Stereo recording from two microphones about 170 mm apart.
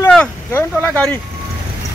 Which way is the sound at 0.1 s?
10° left (ahead or behind).